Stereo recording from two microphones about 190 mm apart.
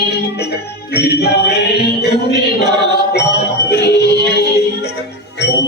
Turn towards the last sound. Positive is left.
turn(degrees=60)  # may be behind; listen again after turning